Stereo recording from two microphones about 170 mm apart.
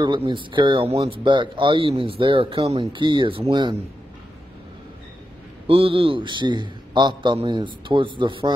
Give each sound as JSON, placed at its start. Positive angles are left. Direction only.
{"t": 0.0, "sound": "speech", "side_deg": -30}
{"t": 5.7, "sound": "speech", "side_deg": -30}